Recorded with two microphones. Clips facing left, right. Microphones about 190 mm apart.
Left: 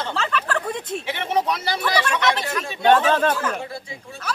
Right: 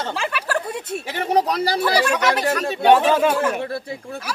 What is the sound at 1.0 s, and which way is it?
Speech, 40° right (ahead or behind).